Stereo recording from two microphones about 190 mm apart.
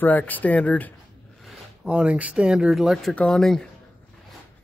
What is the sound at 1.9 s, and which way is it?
Speech, 5° right (ahead or behind).